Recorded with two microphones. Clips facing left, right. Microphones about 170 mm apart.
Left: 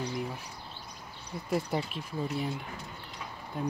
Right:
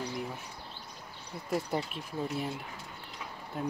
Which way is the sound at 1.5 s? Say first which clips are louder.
Left 1 dB; centre (ahead or behind).